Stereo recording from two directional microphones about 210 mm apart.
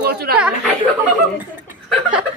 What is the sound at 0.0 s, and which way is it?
Speech, 50° right (ahead or behind).